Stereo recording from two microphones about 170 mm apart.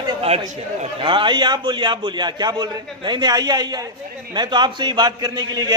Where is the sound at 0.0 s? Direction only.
35° right (ahead or behind).